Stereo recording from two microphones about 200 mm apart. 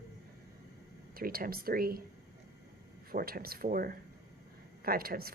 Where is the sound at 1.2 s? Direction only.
45° right (ahead or behind).